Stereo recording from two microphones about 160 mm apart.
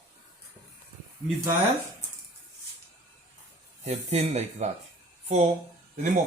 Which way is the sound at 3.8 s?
45° right (ahead or behind).